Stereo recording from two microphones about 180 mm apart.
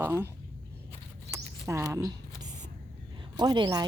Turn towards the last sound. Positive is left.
turn(degrees=-25)  # may be behind; listen again after turning